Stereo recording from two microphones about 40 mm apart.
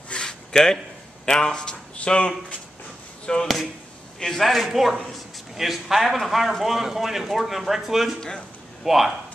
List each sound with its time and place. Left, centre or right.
0.1 s a sound: left
1.2 s speech: centre
4.4 s a man's voice: centre